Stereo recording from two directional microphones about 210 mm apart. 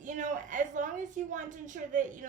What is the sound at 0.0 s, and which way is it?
A woman's voice, 35° right (ahead or behind).